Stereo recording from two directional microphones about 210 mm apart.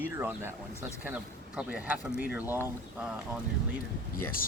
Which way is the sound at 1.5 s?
5° right (ahead or behind).